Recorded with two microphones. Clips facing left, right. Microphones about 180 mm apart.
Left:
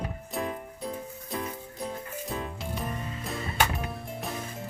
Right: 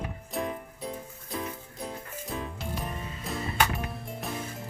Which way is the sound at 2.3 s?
Centre (ahead or behind).